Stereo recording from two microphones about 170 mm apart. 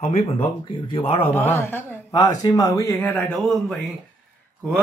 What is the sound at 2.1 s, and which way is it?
A man's voice, 25° left (ahead or behind).